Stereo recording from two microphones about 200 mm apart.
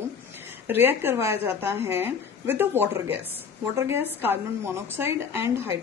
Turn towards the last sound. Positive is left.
turn(degrees=-10)  # may be behind; listen again after turning